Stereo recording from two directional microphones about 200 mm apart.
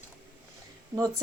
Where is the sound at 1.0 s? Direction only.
15° right (ahead or behind).